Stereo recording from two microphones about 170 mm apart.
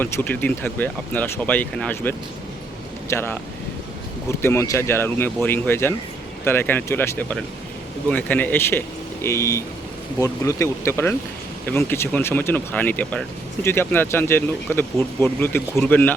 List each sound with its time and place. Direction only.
0.0 s speech: 10° left (ahead or behind)
4.4 s speech: 15° left (ahead or behind)